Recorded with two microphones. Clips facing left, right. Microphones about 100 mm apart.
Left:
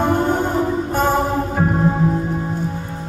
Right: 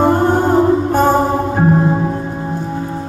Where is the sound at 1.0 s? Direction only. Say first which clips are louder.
Right 5 dB; 40° right (ahead or behind).